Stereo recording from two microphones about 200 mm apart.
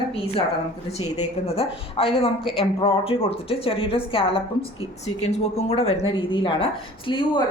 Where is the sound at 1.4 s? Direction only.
30° left (ahead or behind).